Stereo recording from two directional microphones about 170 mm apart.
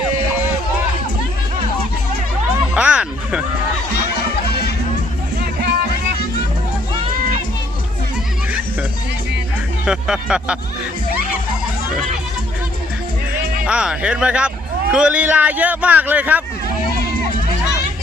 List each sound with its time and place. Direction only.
2.7 s music: 5° right (ahead or behind)
5.4 s music: 80° right
9.8 s speech: 5° right (ahead or behind)
13.7 s a man's voice: 5° right (ahead or behind)